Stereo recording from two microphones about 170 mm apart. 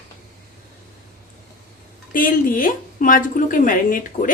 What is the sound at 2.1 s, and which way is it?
A woman's voice, 55° left (ahead or behind).